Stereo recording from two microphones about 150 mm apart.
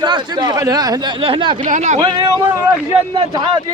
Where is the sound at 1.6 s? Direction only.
55° right (ahead or behind).